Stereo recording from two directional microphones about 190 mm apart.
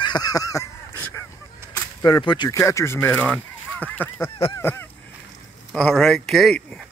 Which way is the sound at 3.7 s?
10° left (ahead or behind).